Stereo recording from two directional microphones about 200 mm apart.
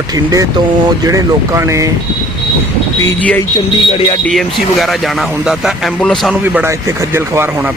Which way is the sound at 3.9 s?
25° left (ahead or behind).